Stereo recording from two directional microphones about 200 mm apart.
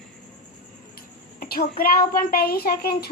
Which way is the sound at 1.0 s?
50° left (ahead or behind).